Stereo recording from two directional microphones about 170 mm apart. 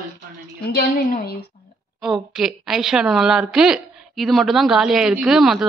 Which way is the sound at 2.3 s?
Centre (ahead or behind).